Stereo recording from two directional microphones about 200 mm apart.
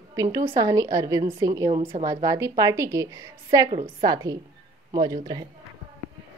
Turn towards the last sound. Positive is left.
turn(degrees=-20)  # may be behind; listen again after turning